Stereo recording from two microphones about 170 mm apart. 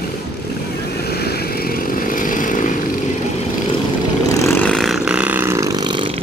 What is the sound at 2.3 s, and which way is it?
Vehicle, 50° left (ahead or behind).